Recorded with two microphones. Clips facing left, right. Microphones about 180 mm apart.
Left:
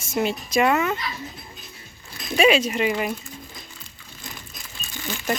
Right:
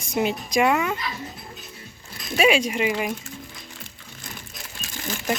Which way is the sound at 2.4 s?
10° right (ahead or behind).